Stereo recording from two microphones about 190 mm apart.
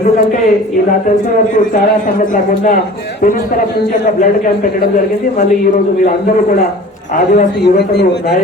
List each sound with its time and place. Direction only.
7.3 s speech: 60° left (ahead or behind)